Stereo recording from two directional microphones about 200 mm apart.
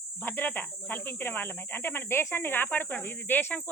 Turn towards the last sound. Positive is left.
turn(degrees=10)  # may be behind; listen again after turning